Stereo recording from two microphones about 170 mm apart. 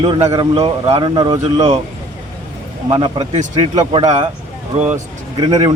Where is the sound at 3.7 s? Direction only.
25° right (ahead or behind).